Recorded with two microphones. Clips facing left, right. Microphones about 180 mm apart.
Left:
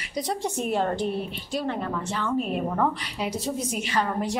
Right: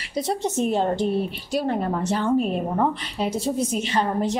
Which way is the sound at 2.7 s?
25° right (ahead or behind).